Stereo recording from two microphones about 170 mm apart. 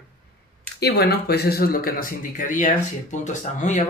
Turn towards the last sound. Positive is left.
turn(degrees=45)  # may be behind; listen again after turning